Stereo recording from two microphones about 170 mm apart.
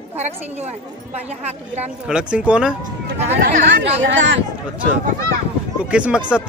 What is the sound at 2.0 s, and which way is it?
Speech, 5° right (ahead or behind).